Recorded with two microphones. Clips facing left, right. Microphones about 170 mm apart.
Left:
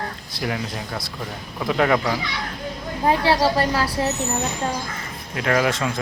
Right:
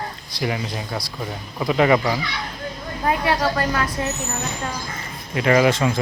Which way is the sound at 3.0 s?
30° left (ahead or behind).